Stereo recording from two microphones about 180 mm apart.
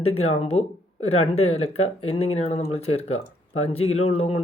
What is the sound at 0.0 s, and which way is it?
Speech, 35° left (ahead or behind).